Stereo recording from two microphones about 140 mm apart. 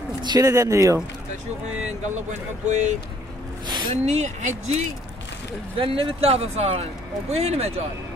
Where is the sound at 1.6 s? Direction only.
55° right (ahead or behind).